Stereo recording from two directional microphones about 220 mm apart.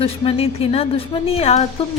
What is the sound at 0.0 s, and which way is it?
A woman's voice, 25° left (ahead or behind).